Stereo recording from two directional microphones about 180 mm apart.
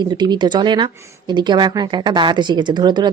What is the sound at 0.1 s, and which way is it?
A woman's voice, 25° right (ahead or behind).